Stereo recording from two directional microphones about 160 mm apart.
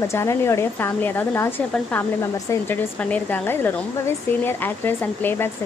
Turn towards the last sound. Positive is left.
turn(degrees=15)  # may be behind; listen again after turning